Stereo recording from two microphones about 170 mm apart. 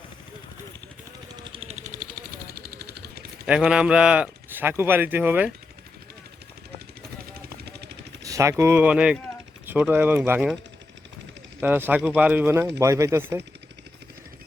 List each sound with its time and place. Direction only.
1.4 s a sound: 35° right (ahead or behind); by 3.2 s 70° right (ahead or behind)
3.4 s speech: 5° right (ahead or behind)
7.6 s vehicle: 75° right (ahead or behind)
8.2 s speech: 20° right (ahead or behind)
11.6 s speech: 10° right (ahead or behind)